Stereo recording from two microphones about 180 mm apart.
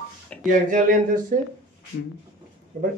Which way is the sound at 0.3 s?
5° left (ahead or behind).